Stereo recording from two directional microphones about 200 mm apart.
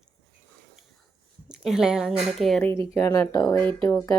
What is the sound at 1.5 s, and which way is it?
Speech, 5° right (ahead or behind).